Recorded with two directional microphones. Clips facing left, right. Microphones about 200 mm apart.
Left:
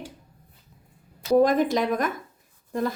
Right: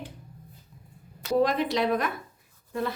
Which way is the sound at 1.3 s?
45° left (ahead or behind).